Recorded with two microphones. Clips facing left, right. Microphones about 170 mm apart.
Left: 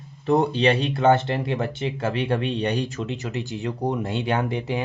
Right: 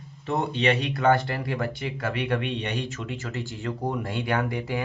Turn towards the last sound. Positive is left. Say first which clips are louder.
# left 2 dB
turn(degrees=20)  # may be behind; listen again after turning